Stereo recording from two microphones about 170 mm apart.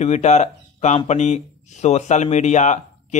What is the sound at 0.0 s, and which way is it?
Speech, 40° left (ahead or behind).